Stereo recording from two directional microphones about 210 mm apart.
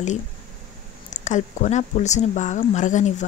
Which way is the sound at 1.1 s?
35° left (ahead or behind).